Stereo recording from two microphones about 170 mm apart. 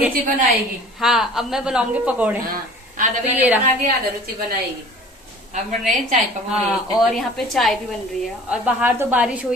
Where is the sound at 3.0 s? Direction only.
50° right (ahead or behind).